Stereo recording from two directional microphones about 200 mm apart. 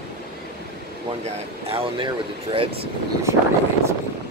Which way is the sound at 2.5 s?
25° right (ahead or behind).